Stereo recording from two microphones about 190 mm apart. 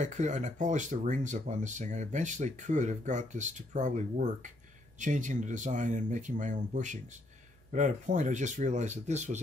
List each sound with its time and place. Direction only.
0.0 s speech: 40° right (ahead or behind)